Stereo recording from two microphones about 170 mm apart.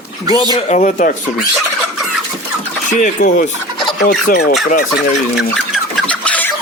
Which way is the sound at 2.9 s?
50° left (ahead or behind).